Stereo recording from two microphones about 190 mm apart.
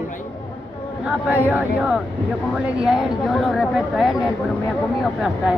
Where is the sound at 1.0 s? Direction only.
10° right (ahead or behind).